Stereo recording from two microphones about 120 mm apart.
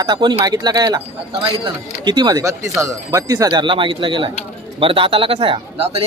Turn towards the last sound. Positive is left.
turn(degrees=-50)  # may be behind; listen again after turning